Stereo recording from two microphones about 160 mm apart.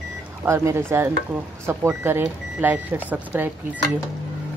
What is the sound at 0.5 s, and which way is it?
Speech, 15° right (ahead or behind).